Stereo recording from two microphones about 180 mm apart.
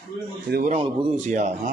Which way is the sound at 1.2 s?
40° right (ahead or behind).